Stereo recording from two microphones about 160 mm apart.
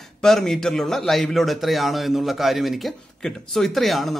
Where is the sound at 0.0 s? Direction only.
Centre (ahead or behind).